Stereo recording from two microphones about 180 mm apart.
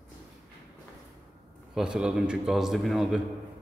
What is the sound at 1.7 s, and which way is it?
A man's voice, 5° right (ahead or behind).